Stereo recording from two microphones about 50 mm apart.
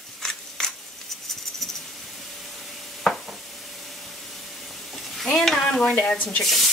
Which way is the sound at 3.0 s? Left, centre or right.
Centre.